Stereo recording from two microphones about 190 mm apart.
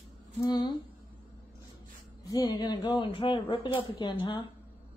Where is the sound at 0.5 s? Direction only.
20° left (ahead or behind).